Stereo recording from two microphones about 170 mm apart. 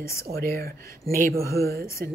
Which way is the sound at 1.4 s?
15° left (ahead or behind).